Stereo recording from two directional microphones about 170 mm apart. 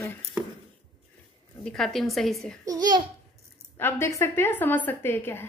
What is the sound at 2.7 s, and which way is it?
Speech, 25° right (ahead or behind).